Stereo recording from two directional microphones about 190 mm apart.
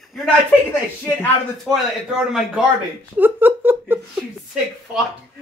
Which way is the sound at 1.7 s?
5° right (ahead or behind).